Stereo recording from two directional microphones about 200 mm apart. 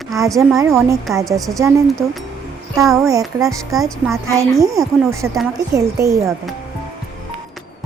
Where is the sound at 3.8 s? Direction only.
15° right (ahead or behind).